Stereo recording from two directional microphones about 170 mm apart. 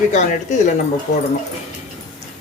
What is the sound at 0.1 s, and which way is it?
Speech, 45° left (ahead or behind).